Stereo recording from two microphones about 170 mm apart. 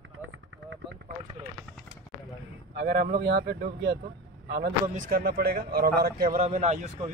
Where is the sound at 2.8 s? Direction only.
65° right (ahead or behind); by 4.0 s 85° right.